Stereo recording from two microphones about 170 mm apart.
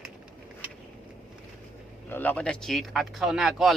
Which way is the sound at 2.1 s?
10° left (ahead or behind).